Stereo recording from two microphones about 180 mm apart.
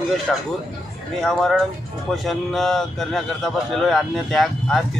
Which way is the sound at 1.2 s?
Centre (ahead or behind).